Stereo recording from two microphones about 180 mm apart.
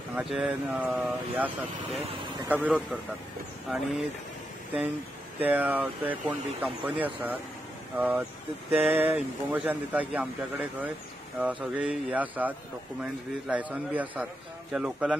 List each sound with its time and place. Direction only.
0.1 s speech: centre (ahead or behind)
5.4 s speech: 10° right (ahead or behind)